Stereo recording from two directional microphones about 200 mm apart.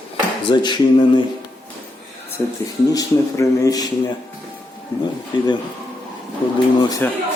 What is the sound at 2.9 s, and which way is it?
Speech, 15° left (ahead or behind).